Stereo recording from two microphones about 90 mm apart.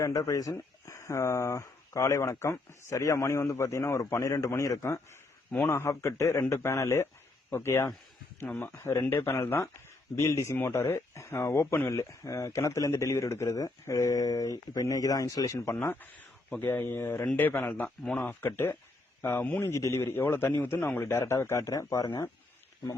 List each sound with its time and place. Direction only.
0.0 s a man's voice: 40° left (ahead or behind)